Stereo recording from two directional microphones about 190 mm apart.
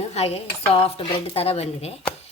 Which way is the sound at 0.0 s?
35° left (ahead or behind).